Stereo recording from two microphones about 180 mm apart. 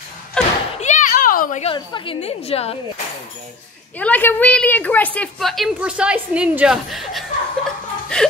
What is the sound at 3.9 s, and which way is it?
A woman's voice, 10° left (ahead or behind).